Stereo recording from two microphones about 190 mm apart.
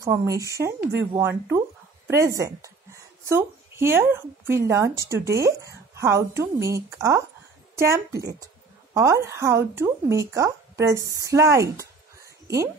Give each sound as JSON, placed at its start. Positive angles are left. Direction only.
{"t": 0.0, "sound": "speech", "side_deg": -15}
{"t": 2.0, "sound": "a woman's voice", "side_deg": -15}